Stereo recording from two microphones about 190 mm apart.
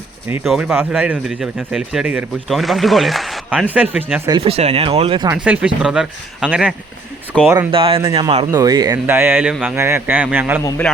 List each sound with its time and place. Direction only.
0.4 s speech: 5° right (ahead or behind)
4.3 s speech: 25° right (ahead or behind)
5.3 s speech: 5° right (ahead or behind)
7.7 s speech: 30° right (ahead or behind); by 10.6 s 10° right (ahead or behind)
10.6 s a man's voice: 15° left (ahead or behind)